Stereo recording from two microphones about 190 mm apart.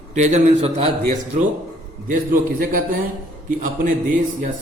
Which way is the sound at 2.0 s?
45° right (ahead or behind).